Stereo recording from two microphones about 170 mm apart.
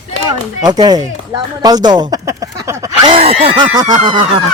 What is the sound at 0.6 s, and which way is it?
Speech, 25° right (ahead or behind).